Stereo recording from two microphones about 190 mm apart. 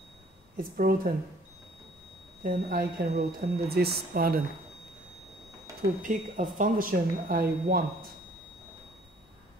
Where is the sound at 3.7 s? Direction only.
55° right (ahead or behind).